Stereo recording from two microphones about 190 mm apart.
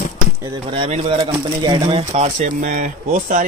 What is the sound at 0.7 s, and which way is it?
Speech, 30° right (ahead or behind).